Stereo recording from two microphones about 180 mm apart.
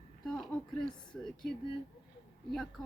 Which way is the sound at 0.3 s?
Centre (ahead or behind).